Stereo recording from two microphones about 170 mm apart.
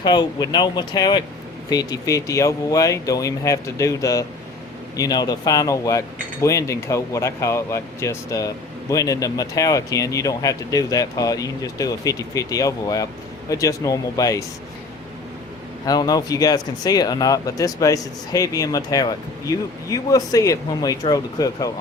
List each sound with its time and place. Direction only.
0.0 s speech: 25° left (ahead or behind)
15.9 s speech: 20° left (ahead or behind)